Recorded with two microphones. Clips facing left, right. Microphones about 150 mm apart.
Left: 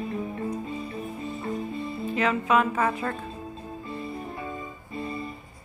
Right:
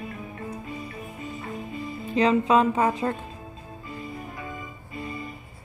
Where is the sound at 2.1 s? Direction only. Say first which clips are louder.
Right 4 dB; 30° right (ahead or behind).